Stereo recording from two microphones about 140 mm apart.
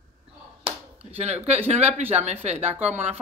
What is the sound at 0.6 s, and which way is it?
Speech, 45° right (ahead or behind).